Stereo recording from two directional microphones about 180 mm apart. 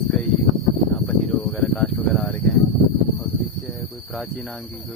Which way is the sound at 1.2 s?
10° left (ahead or behind).